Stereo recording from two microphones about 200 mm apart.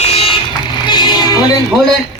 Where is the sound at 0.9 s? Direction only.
20° left (ahead or behind).